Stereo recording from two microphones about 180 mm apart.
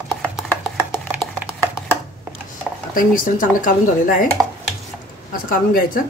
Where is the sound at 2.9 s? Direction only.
50° left (ahead or behind).